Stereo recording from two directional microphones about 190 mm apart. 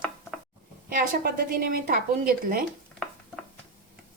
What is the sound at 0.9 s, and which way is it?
A woman's voice, 50° right (ahead or behind).